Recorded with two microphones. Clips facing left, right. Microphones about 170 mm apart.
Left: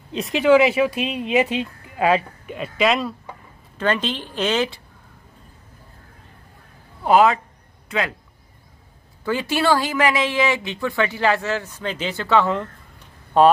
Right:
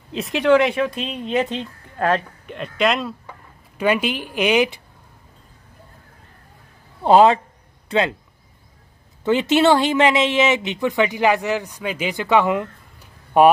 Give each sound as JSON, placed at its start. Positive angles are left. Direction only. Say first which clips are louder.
{"t": 0.1, "sound": "speech", "louder": "left 1 dB", "side_deg": 0}
{"t": 3.7, "sound": "speech", "louder": "right 3 dB", "side_deg": -10}
{"t": 7.0, "sound": "speech", "louder": "right 3 dB", "side_deg": -30}
{"t": 9.2, "sound": "speech", "louder": "right 5 dB", "side_deg": -20}